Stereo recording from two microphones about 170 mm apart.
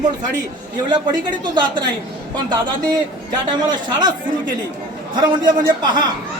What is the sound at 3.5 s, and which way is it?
Speech, 25° right (ahead or behind).